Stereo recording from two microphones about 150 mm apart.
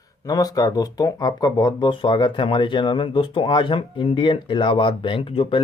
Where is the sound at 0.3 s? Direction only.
25° left (ahead or behind).